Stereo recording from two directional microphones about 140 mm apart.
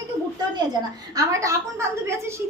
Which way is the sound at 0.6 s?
30° right (ahead or behind).